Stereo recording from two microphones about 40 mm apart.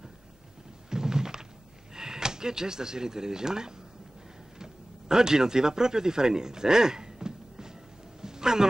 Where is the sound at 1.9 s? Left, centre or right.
Centre.